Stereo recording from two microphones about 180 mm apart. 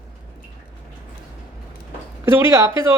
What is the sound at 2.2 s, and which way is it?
Speech, 15° right (ahead or behind).